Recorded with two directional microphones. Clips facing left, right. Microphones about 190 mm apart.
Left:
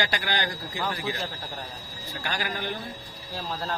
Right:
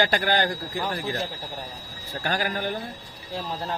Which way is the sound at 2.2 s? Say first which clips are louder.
Right 5 dB; 45° right (ahead or behind).